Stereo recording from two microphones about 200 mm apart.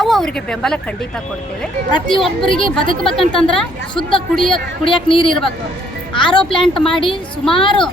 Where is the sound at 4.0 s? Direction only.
25° left (ahead or behind).